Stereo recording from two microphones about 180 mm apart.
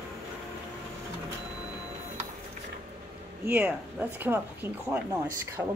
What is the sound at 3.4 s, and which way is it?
Speech, 10° right (ahead or behind).